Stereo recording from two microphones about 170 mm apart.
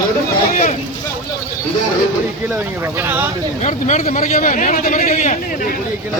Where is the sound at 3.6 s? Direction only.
45° left (ahead or behind).